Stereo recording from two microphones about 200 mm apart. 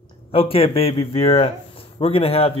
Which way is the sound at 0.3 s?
30° left (ahead or behind).